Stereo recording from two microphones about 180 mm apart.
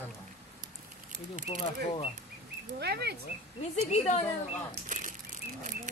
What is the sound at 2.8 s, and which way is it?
Speech, 65° right (ahead or behind).